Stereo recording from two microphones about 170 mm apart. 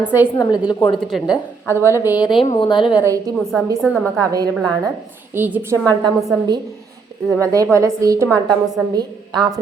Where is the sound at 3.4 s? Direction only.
Centre (ahead or behind).